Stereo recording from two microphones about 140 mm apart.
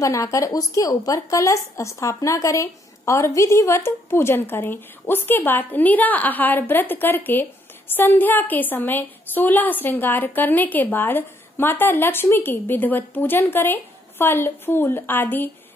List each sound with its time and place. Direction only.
0.0 s a woman's voice: 25° left (ahead or behind)